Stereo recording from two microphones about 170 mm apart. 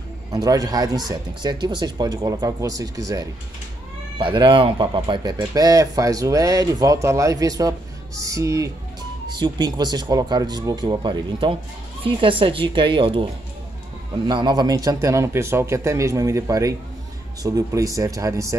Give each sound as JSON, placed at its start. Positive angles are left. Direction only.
{"t": 0.3, "sound": "a woman's voice", "side_deg": -20}